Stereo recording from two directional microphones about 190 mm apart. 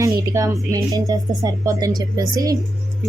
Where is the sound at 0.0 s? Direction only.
15° right (ahead or behind).